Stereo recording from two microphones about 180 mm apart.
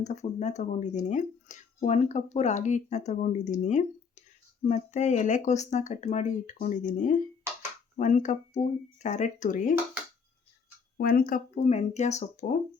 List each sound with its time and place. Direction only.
0.0 s speech: 40° left (ahead or behind)
10.9 s speech: 55° left (ahead or behind)